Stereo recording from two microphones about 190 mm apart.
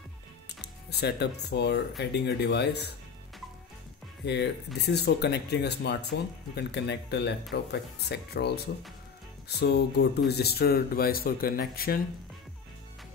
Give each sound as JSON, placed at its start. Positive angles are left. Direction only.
{"t": 0.6, "sound": "speech", "side_deg": 60}
{"t": 4.8, "sound": "speech", "side_deg": 60}